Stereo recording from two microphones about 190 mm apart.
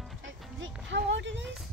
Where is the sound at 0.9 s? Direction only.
70° right (ahead or behind).